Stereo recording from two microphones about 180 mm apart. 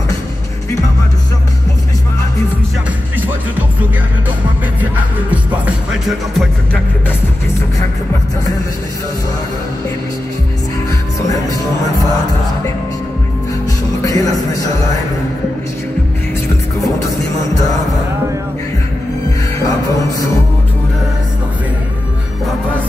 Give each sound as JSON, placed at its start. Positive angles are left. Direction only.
{"t": 4.7, "sound": "music", "side_deg": -10}
{"t": 14.0, "sound": "music", "side_deg": 20}